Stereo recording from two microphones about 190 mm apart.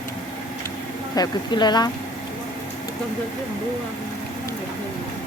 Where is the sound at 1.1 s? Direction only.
20° left (ahead or behind).